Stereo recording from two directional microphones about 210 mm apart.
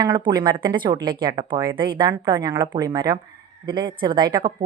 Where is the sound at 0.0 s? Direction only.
20° right (ahead or behind).